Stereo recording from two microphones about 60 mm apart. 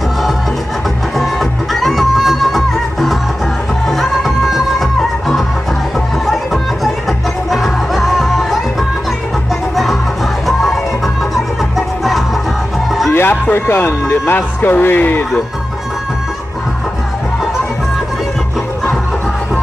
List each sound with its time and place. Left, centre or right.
1.1 s music: centre
5.9 s music: centre
10.4 s music: centre
13.1 s speech: left